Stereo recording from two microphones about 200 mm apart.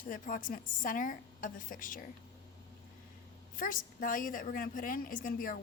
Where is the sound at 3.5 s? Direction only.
40° left (ahead or behind).